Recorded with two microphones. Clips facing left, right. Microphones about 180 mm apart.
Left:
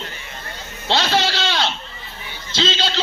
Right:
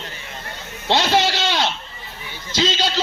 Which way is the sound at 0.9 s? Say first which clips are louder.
Right 2 dB; 20° right (ahead or behind).